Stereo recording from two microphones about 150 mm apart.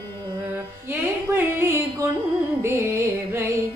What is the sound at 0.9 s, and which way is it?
Music, 15° right (ahead or behind).